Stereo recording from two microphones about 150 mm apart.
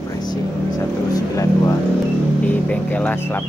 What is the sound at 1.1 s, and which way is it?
Speech, 20° left (ahead or behind).